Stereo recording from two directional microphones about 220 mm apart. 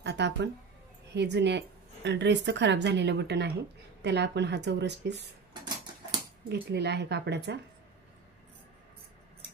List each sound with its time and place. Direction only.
0.0 s a sound: 50° right (ahead or behind)
1.1 s speech: 50° right (ahead or behind)
6.5 s speech: 50° right (ahead or behind)